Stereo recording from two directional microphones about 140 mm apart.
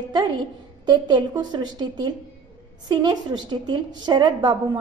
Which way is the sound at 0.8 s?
30° right (ahead or behind).